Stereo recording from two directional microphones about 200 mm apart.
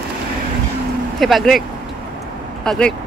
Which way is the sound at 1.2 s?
Centre (ahead or behind).